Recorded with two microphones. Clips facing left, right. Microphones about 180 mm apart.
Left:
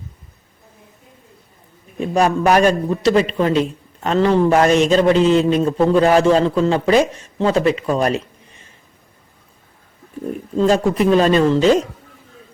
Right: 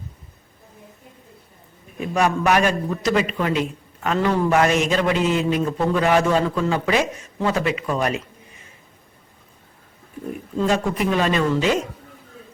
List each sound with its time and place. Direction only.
2.0 s a man's voice: 35° left (ahead or behind)
10.6 s a man's voice: 30° left (ahead or behind)